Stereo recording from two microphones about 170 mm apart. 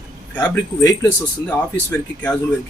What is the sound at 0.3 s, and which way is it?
Speech, 25° left (ahead or behind).